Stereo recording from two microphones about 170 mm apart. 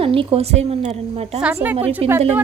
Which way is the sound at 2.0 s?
35° right (ahead or behind).